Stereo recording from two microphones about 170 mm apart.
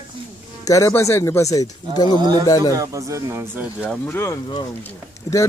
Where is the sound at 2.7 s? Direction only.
20° right (ahead or behind).